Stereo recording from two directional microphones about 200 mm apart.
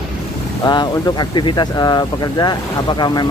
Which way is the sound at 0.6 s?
20° left (ahead or behind).